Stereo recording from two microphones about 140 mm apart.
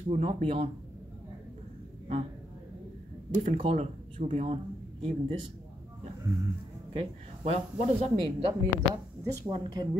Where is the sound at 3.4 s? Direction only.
40° right (ahead or behind).